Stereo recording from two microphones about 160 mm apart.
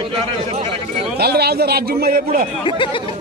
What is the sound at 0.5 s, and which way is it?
Speech, 35° right (ahead or behind).